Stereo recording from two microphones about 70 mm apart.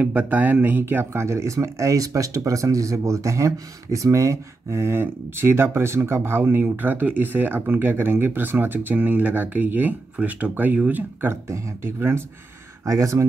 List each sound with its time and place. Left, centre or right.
0.0 s speech: right
11.4 s speech: right
12.8 s speech: right